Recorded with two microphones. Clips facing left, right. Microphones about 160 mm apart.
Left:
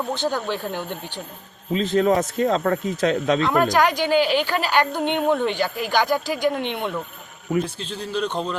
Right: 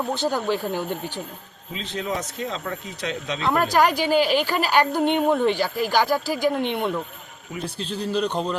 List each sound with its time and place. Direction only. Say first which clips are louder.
0.3 s a woman's voice: right 3 dB; 10° right (ahead or behind)
1.7 s speech: left 10 dB; 45° left (ahead or behind)
3.4 s a woman's voice: right 2 dB; 5° right (ahead or behind)
7.5 s speech: left 10 dB; 55° left (ahead or behind)
8.1 s a woman's voice: even; 10° right (ahead or behind)